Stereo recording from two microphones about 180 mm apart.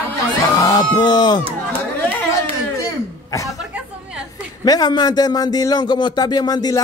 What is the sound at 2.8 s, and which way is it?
Throat clearing, 20° left (ahead or behind).